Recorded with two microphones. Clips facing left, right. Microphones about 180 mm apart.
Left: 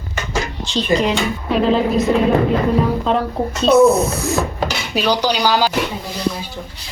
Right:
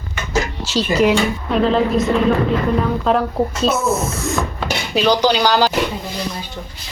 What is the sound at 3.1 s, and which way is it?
Speech, centre (ahead or behind).